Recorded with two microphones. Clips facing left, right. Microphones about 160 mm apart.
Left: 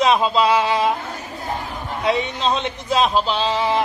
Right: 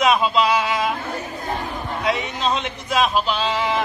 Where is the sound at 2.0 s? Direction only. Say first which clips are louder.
Left 3 dB; 30° left (ahead or behind).